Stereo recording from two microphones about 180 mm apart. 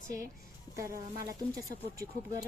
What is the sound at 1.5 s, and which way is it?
Speech, 20° right (ahead or behind).